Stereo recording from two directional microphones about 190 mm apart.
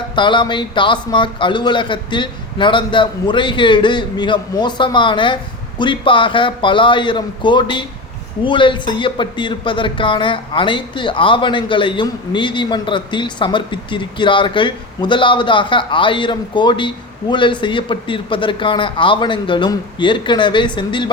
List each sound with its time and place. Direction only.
0.2 s speech: 25° left (ahead or behind)